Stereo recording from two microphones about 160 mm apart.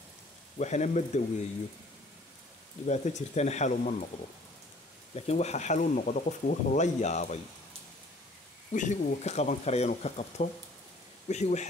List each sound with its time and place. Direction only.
0.6 s speech: 45° left (ahead or behind)
2.9 s speech: 45° left (ahead or behind)
5.1 s speech: 40° left (ahead or behind)
8.7 s speech: 50° left (ahead or behind)